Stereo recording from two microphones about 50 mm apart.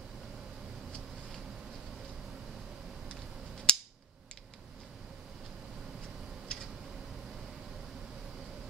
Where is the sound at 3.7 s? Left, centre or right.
Centre.